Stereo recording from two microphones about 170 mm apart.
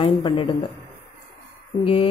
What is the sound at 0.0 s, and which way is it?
Speech, 30° left (ahead or behind).